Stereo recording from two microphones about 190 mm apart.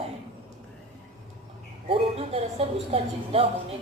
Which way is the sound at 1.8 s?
30° right (ahead or behind).